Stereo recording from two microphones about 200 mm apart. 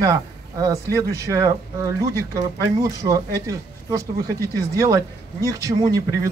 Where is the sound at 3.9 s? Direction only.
15° right (ahead or behind).